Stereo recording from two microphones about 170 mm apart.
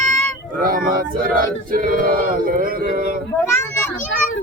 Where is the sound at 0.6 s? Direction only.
55° right (ahead or behind).